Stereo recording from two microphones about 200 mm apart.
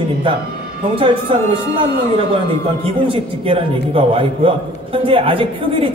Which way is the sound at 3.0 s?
25° right (ahead or behind).